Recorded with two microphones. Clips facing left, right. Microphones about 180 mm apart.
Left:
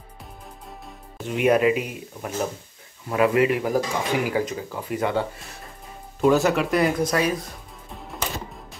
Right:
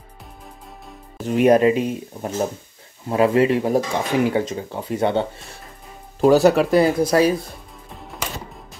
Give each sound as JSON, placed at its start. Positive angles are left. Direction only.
{"t": 1.2, "sound": "speech", "side_deg": -40}
{"t": 6.2, "sound": "speech", "side_deg": -35}